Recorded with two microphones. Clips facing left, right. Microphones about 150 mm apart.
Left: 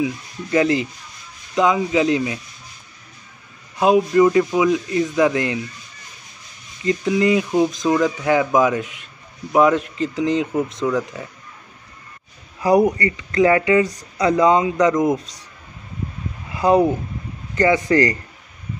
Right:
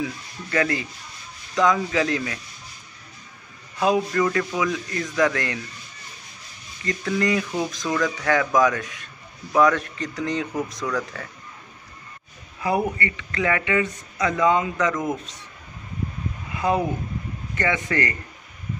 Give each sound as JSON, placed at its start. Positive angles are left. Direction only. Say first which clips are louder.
{"t": 0.0, "sound": "speech", "louder": "left 6 dB", "side_deg": 20}
{"t": 3.8, "sound": "speech", "louder": "left 7 dB", "side_deg": 20}
{"t": 6.8, "sound": "speech", "louder": "left 6 dB", "side_deg": 20}
{"t": 12.9, "sound": "speech", "louder": "left 8 dB", "side_deg": 35}
{"t": 16.5, "sound": "speech", "louder": "left 7 dB", "side_deg": 35}